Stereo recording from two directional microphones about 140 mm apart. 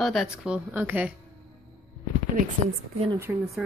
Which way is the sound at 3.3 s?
10° right (ahead or behind).